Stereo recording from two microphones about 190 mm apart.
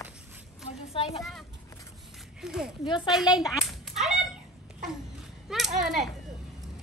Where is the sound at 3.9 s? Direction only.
Centre (ahead or behind).